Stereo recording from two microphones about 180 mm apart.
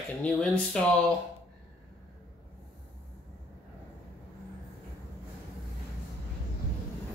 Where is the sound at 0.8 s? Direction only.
5° left (ahead or behind).